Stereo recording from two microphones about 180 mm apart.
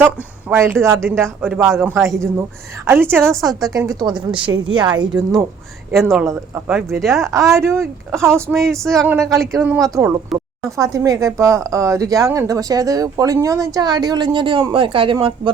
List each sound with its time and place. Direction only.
0.5 s a man's voice: 15° right (ahead or behind)
5.9 s a man's voice: centre (ahead or behind)
7.3 s a man's voice: 15° right (ahead or behind)
8.5 s speech: centre (ahead or behind)
9.5 s a man's voice: 15° right (ahead or behind); by 15.3 s 30° right (ahead or behind)